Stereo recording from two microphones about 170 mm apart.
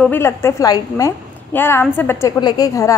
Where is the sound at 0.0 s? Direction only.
15° left (ahead or behind).